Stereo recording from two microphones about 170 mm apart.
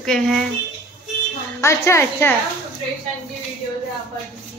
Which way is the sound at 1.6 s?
15° left (ahead or behind).